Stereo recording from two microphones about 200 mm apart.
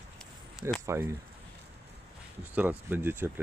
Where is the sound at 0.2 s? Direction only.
Centre (ahead or behind).